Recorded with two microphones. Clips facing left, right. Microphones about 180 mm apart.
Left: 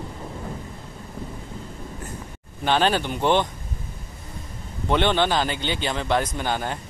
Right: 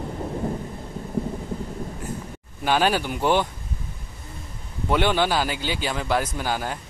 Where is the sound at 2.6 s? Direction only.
10° right (ahead or behind).